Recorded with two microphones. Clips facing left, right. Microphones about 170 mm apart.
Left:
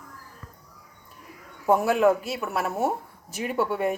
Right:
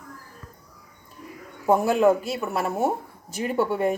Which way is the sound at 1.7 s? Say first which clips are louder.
Right 1 dB; centre (ahead or behind).